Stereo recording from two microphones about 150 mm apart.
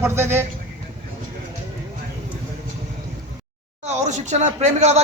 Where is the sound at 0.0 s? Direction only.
15° right (ahead or behind).